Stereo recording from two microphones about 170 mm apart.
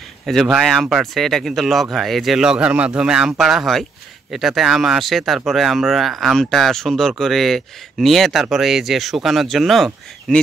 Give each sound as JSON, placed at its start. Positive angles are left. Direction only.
{"t": 0.3, "sound": "speech", "side_deg": 0}